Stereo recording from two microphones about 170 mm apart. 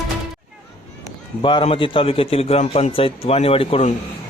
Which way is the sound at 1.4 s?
30° left (ahead or behind).